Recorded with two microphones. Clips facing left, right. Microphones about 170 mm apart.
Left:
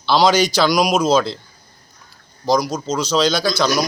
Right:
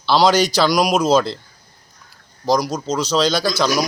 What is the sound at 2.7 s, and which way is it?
Speech, 5° left (ahead or behind).